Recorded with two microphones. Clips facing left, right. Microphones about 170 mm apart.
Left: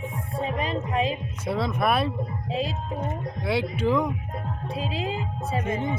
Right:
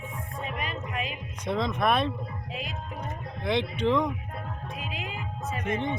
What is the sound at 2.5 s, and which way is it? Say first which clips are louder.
Speech: left 8 dB; 30° left (ahead or behind).